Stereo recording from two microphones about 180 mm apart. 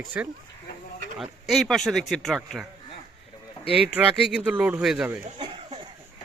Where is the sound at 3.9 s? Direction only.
5° right (ahead or behind).